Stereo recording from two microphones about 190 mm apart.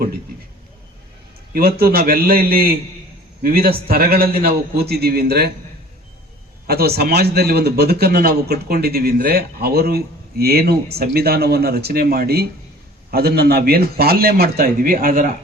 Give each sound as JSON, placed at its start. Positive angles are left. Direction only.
{"t": 1.5, "sound": "a man's voice", "side_deg": -50}
{"t": 6.7, "sound": "a man's voice", "side_deg": -55}